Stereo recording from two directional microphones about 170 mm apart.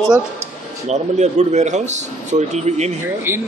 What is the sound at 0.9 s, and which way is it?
Speech, 40° right (ahead or behind).